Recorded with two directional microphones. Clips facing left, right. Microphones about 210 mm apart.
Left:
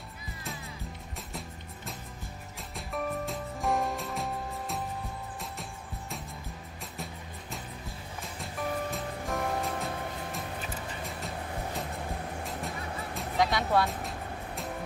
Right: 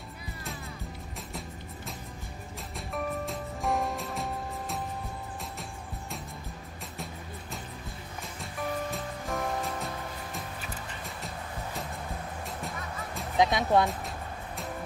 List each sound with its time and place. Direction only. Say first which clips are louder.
2.9 s music: even; centre (ahead or behind)
8.9 s music: even; centre (ahead or behind)
13.4 s music: right 3 dB; 20° right (ahead or behind)